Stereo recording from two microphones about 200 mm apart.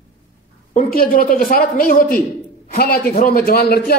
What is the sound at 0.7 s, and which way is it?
Speech, 45° left (ahead or behind).